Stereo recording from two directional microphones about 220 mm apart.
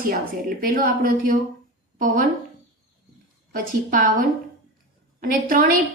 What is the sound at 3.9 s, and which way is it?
Speech, 40° right (ahead or behind).